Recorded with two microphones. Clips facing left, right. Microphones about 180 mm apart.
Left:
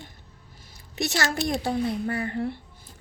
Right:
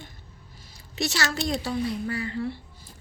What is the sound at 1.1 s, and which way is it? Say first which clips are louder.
A woman's voice: left 3 dB; 55° left (ahead or behind).